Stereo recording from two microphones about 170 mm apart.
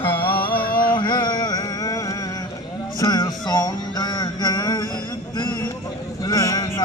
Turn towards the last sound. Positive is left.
turn(degrees=20)  # may be behind; listen again after turning